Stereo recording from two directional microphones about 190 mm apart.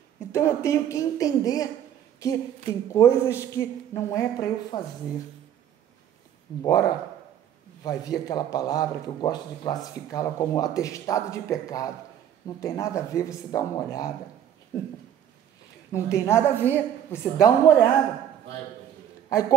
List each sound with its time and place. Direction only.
0.3 s a woman's voice: 15° left (ahead or behind)
6.6 s a man's voice: 20° left (ahead or behind)
15.9 s a woman's voice: 15° left (ahead or behind)